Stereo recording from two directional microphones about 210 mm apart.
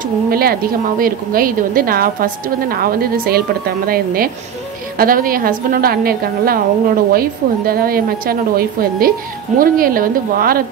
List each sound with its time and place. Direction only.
0.3 s a woman's voice: 45° right (ahead or behind)
4.9 s a woman's voice: 45° right (ahead or behind)